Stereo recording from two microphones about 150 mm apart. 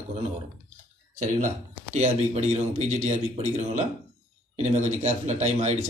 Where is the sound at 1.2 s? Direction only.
55° right (ahead or behind).